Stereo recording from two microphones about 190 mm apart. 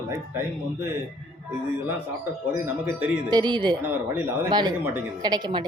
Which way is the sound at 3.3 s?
25° right (ahead or behind).